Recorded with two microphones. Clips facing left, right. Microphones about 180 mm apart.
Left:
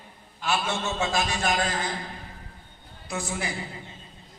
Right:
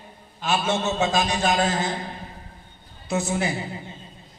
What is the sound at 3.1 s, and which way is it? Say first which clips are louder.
Speech: right 7 dB; 25° right (ahead or behind).